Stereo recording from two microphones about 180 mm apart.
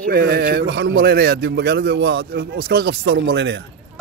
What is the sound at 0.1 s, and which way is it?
A man's voice, 55° right (ahead or behind).